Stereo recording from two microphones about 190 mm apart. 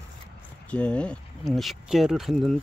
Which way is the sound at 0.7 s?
5° left (ahead or behind).